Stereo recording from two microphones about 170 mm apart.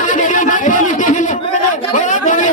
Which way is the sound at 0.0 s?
50° left (ahead or behind).